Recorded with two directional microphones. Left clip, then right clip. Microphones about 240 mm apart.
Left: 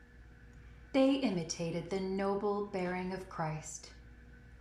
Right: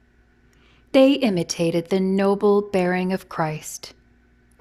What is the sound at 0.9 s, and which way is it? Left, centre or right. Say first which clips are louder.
A woman's voice: right 14 dB; right.